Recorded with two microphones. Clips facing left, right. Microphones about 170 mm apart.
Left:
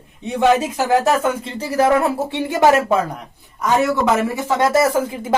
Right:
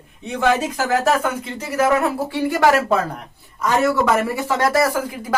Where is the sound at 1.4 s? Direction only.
30° left (ahead or behind).